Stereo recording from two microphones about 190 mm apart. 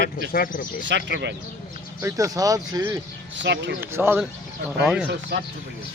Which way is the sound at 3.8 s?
10° right (ahead or behind).